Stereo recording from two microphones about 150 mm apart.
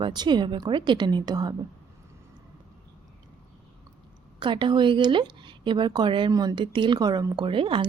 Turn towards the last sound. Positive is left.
turn(degrees=-35)  # may be behind; listen again after turning